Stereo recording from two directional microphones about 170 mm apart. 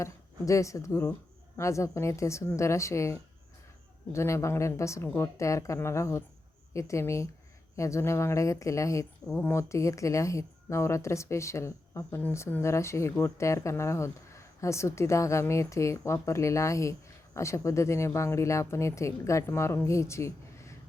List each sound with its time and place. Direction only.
0.0 s speech: 20° left (ahead or behind)
9.2 s speech: 5° left (ahead or behind)
9.5 s speech: 15° left (ahead or behind)